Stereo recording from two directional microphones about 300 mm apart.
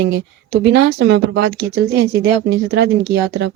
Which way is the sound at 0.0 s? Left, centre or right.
Right.